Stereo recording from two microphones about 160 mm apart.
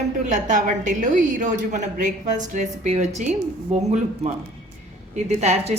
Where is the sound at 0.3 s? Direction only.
50° right (ahead or behind).